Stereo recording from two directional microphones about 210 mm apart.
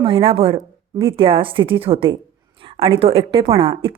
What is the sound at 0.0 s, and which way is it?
A woman's voice, 25° right (ahead or behind).